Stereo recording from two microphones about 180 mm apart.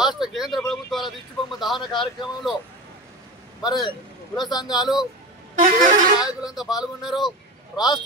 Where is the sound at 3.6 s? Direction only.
25° left (ahead or behind).